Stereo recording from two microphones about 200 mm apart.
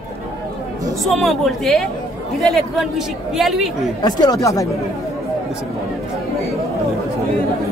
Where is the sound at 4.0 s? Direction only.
20° left (ahead or behind).